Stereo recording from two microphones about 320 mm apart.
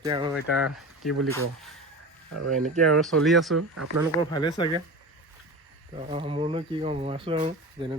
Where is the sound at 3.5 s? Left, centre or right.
Right.